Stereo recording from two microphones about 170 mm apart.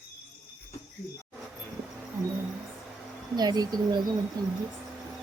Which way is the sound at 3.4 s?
25° right (ahead or behind).